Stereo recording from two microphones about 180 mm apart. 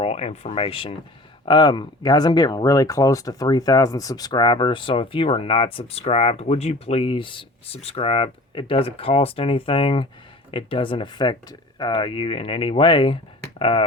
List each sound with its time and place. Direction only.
0.0 s speech: 35° left (ahead or behind)